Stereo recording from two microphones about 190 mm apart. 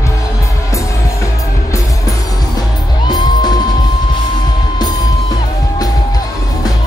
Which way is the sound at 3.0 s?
20° left (ahead or behind).